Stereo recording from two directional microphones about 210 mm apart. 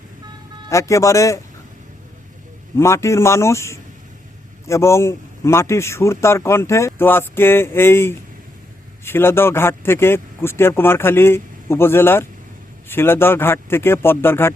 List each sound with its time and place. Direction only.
0.7 s a man's voice: 15° left (ahead or behind)
2.7 s a man's voice: 15° left (ahead or behind)